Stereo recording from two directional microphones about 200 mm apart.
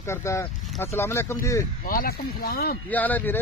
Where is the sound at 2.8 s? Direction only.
10° left (ahead or behind).